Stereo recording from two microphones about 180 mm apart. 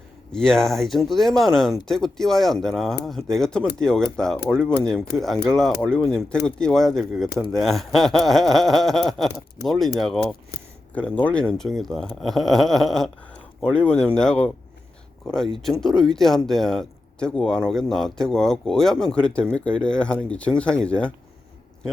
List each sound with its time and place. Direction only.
0.3 s speech: 5° left (ahead or behind)
15.6 s speech: centre (ahead or behind)